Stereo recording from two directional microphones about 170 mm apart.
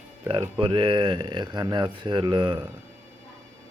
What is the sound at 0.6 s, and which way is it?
Speech, 30° right (ahead or behind).